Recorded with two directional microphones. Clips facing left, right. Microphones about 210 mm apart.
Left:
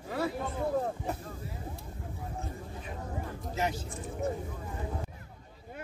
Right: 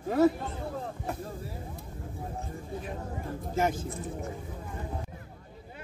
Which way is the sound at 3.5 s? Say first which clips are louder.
Right 5 dB; 50° right (ahead or behind).